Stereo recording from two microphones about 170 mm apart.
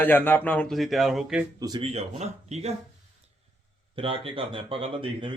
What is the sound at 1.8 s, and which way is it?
Speech, 40° right (ahead or behind).